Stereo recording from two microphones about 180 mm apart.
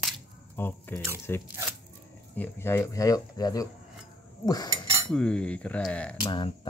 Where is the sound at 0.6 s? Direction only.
10° left (ahead or behind).